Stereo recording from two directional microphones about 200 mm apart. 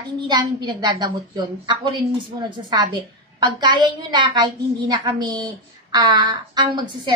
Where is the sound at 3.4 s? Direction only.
20° right (ahead or behind).